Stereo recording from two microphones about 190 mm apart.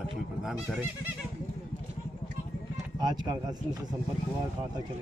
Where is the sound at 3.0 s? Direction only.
20° right (ahead or behind).